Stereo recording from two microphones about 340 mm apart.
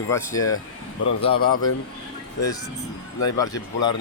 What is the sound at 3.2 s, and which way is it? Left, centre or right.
Speech, centre.